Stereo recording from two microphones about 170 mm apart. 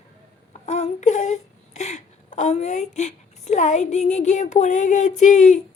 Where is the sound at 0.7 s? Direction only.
45° left (ahead or behind).